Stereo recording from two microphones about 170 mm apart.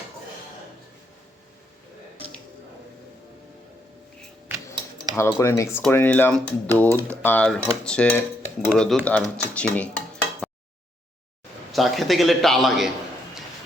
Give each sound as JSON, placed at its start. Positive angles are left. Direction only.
{"t": 4.4, "sound": "a sound", "side_deg": -20}
{"t": 5.1, "sound": "a man's voice", "side_deg": 15}
{"t": 11.7, "sound": "a man's voice", "side_deg": 0}